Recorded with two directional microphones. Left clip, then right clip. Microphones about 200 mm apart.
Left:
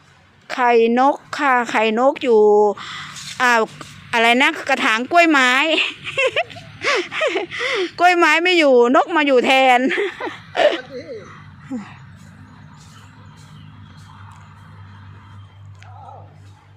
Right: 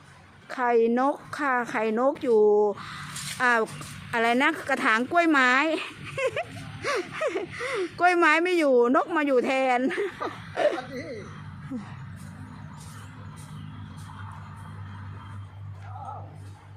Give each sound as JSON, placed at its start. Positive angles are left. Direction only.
{"t": 0.4, "sound": "a woman's voice", "side_deg": 25}